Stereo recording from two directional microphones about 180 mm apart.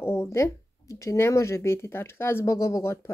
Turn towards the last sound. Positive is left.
turn(degrees=15)  # may be behind; listen again after turning